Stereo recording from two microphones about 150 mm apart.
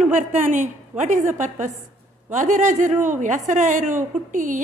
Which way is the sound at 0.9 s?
55° right (ahead or behind).